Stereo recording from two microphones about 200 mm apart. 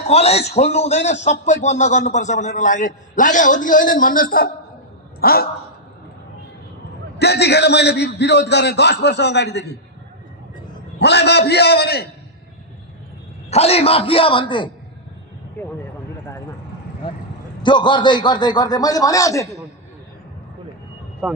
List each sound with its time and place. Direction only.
0.1 s a man's voice: 30° left (ahead or behind)
5.2 s a sound: 50° left (ahead or behind)
7.2 s a man's voice: 55° left (ahead or behind)
11.0 s a man's voice: 55° left (ahead or behind)
13.5 s a man's voice: 30° left (ahead or behind)
17.6 s a man's voice: 25° left (ahead or behind)
21.2 s speech: 5° right (ahead or behind)